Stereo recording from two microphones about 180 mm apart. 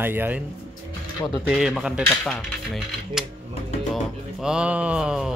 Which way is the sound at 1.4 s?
Centre (ahead or behind).